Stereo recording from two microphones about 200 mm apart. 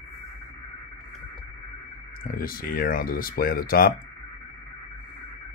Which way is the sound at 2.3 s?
45° left (ahead or behind).